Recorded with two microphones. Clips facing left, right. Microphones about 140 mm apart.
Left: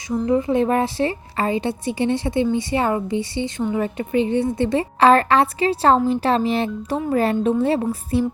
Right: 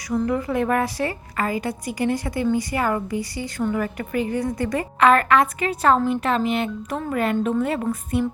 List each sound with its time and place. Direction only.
0.1 s a woman's voice: 25° left (ahead or behind)